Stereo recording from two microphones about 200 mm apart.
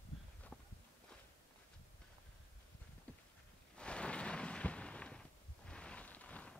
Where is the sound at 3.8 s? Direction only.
5° left (ahead or behind).